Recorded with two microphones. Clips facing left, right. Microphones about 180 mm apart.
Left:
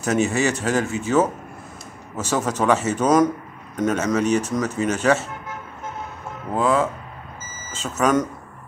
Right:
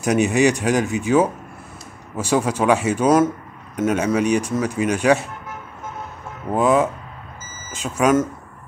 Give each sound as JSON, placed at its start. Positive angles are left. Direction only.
{"t": 0.0, "sound": "speech", "side_deg": -15}
{"t": 6.5, "sound": "speech", "side_deg": -20}